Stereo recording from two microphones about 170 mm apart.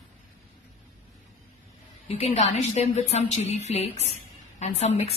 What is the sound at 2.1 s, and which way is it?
A woman's voice, 35° left (ahead or behind).